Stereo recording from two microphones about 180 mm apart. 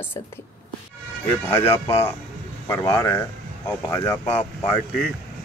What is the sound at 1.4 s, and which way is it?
A woman's voice, 15° left (ahead or behind).